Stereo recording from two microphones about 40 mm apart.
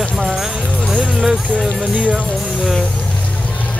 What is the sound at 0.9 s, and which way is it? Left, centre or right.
Music, centre.